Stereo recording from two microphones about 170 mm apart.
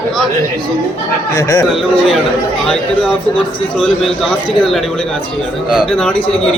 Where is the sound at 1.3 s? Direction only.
20° left (ahead or behind).